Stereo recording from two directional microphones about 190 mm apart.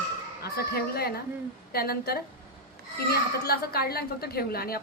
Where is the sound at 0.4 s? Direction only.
55° left (ahead or behind).